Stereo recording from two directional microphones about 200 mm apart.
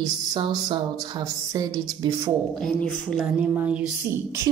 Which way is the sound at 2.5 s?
5° left (ahead or behind).